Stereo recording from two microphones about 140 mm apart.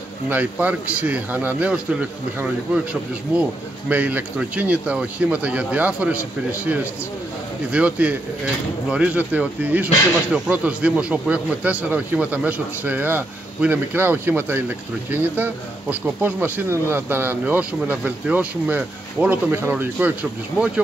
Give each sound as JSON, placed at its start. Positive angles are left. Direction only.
{"t": 0.3, "sound": "speech", "side_deg": -10}